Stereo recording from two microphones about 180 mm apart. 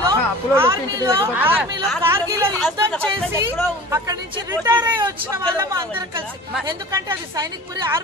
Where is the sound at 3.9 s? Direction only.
20° right (ahead or behind).